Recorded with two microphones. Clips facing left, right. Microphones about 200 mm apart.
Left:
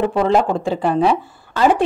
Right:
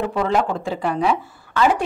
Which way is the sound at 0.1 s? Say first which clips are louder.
Left 4 dB; 30° left (ahead or behind).